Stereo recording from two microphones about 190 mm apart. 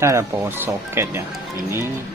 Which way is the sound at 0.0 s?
15° right (ahead or behind).